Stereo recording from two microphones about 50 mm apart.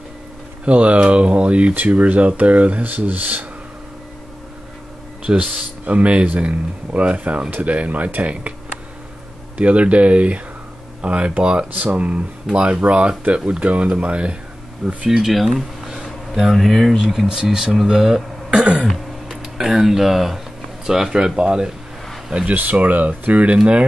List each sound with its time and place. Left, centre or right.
0.7 s speech: right
5.2 s speech: centre
9.6 s speech: right
15.0 s speech: centre
18.6 s speech: right
18.9 s speech: centre; by 22.6 s right
22.6 s speech: right